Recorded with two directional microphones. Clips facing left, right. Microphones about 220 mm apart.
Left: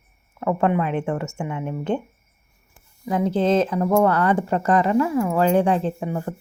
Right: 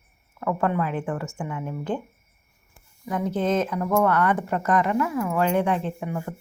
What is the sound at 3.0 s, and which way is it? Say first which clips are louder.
A woman's voice: left 4 dB; 30° left (ahead or behind).